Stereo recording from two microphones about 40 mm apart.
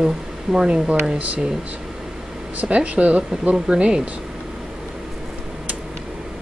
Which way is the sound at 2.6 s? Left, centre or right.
Right.